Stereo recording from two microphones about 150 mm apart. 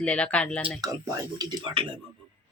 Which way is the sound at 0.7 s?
25° right (ahead or behind).